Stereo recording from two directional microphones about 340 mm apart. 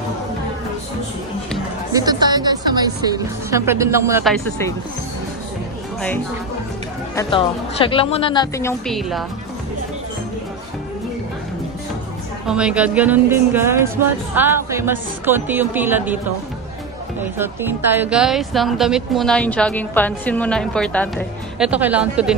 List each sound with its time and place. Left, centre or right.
1.9 s speech: centre
7.2 s a woman's voice: centre
12.4 s a woman's voice: centre
17.2 s a woman's voice: centre